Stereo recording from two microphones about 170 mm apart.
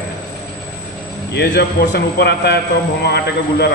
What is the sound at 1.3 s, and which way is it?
A man's voice, 75° left (ahead or behind).